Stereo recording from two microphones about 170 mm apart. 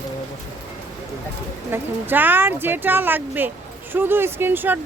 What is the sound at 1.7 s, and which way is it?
Speech, 10° right (ahead or behind).